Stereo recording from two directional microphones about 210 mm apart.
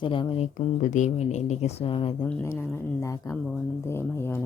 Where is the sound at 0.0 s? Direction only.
25° left (ahead or behind).